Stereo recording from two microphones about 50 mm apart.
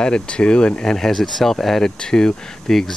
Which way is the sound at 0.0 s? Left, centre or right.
Centre.